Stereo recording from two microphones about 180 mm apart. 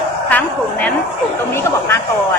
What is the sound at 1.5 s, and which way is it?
Speech, 15° left (ahead or behind).